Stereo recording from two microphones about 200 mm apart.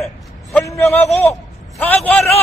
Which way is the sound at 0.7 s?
Centre (ahead or behind).